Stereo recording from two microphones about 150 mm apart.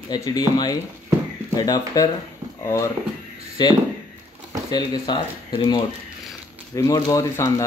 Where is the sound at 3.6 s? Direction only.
30° left (ahead or behind).